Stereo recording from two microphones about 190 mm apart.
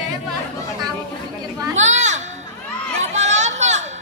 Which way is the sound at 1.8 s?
40° right (ahead or behind).